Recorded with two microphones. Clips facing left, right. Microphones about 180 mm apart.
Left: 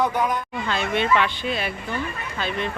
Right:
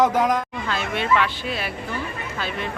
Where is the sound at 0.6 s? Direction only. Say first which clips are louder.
Left 3 dB; centre (ahead or behind).